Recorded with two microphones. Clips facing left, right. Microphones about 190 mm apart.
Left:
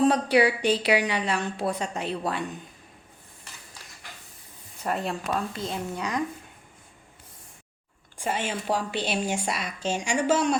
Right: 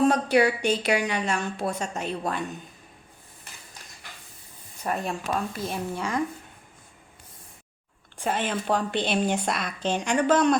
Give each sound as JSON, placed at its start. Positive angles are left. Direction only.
{"t": 0.0, "sound": "a sound", "side_deg": 30}
{"t": 0.6, "sound": "a woman's voice", "side_deg": 30}
{"t": 4.9, "sound": "speech", "side_deg": 30}
{"t": 8.2, "sound": "speech", "side_deg": 10}